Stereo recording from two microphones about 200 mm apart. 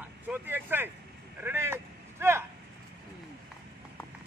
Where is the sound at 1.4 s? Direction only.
10° right (ahead or behind).